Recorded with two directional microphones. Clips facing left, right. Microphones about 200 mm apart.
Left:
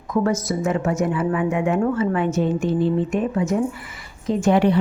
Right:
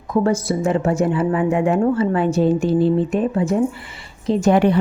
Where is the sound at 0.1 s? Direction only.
30° right (ahead or behind).